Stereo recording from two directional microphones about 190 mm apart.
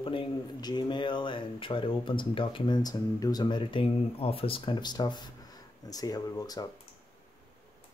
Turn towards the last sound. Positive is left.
turn(degrees=20)  # may be behind; listen again after turning